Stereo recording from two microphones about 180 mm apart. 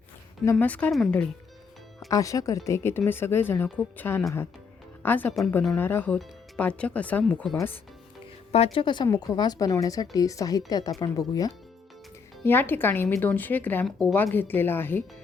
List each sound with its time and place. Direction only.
0.5 s speech: 10° left (ahead or behind)
2.0 s speech: 20° left (ahead or behind)
8.5 s speech: 35° left (ahead or behind); by 15.0 s 10° left (ahead or behind)